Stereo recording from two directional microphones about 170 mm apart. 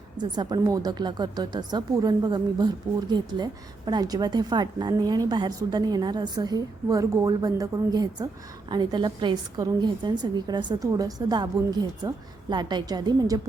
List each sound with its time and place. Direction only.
0.2 s a woman's voice: 25° right (ahead or behind)